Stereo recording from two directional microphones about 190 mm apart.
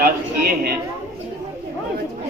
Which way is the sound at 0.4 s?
55° right (ahead or behind).